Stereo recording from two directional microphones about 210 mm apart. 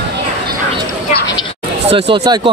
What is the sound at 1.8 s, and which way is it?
Speech, 25° right (ahead or behind).